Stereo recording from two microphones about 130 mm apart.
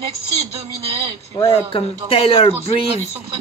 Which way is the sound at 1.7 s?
45° left (ahead or behind).